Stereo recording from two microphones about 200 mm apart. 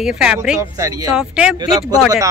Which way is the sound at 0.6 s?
15° right (ahead or behind).